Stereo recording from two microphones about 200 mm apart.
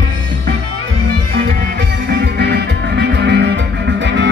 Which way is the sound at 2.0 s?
55° right (ahead or behind).